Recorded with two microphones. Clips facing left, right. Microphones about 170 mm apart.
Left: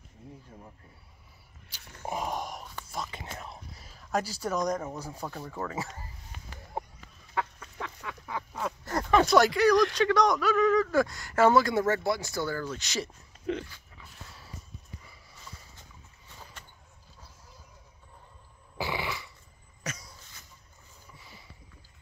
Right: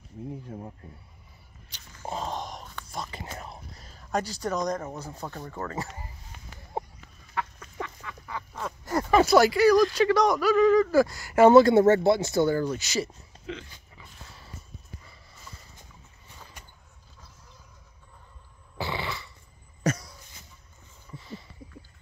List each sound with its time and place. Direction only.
1.7 s dog: 5° left (ahead or behind)
2.0 s whispering: 15° left (ahead or behind)
6.7 s chicken: 20° right (ahead or behind)
8.8 s speech: 5° right (ahead or behind)
11.3 s speech: 20° right (ahead or behind)
12.7 s speech: 5° right (ahead or behind)
13.5 s dog: 50° left (ahead or behind)
13.9 s dog: centre (ahead or behind)
18.8 s a sound: 10° left (ahead or behind)
21.2 s a sound: 10° left (ahead or behind)